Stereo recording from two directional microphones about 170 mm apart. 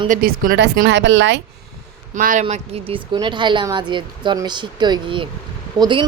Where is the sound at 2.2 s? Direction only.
50° right (ahead or behind).